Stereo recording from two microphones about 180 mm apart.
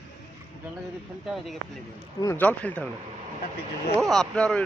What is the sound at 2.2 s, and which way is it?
Speech, 15° left (ahead or behind).